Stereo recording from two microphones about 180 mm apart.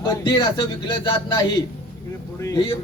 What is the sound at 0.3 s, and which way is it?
Speech, 25° left (ahead or behind).